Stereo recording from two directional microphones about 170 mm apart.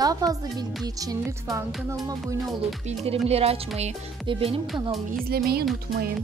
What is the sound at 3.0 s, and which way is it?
Speech, 35° right (ahead or behind).